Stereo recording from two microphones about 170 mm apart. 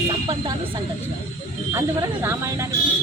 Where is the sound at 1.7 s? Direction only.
15° right (ahead or behind).